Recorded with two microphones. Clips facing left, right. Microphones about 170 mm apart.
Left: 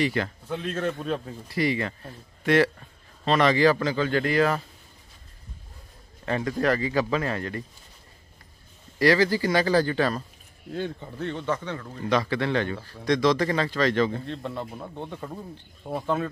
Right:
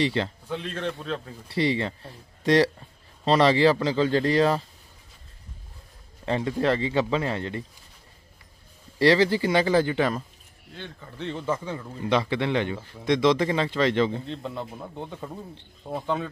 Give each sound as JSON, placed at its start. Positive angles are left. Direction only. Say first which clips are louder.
{"t": 0.0, "sound": "speech", "louder": "right 1 dB", "side_deg": -25}
{"t": 0.5, "sound": "speech", "louder": "left 2 dB", "side_deg": 5}
{"t": 1.5, "sound": "speech", "louder": "right 1 dB", "side_deg": -30}
{"t": 6.2, "sound": "speech", "louder": "right 1 dB", "side_deg": -25}
{"t": 8.9, "sound": "speech", "louder": "right 1 dB", "side_deg": -30}
{"t": 11.1, "sound": "a man's voice", "louder": "right 1 dB", "side_deg": 0}
{"t": 12.1, "sound": "speech", "louder": "even", "side_deg": -25}
{"t": 14.2, "sound": "speech", "louder": "left 1 dB", "side_deg": 0}